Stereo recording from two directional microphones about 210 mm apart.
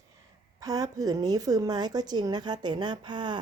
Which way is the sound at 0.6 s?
15° right (ahead or behind).